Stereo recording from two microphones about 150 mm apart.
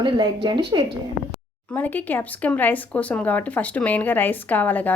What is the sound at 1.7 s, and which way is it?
Speech, 10° left (ahead or behind).